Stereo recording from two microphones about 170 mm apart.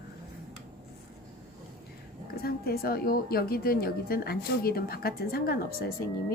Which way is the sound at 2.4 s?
65° left (ahead or behind).